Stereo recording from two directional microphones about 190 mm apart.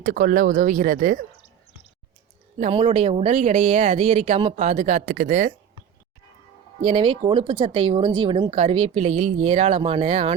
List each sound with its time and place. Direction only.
0.0 s speech: 45° right (ahead or behind)
2.6 s speech: 30° right (ahead or behind)
6.8 s speech: 30° right (ahead or behind)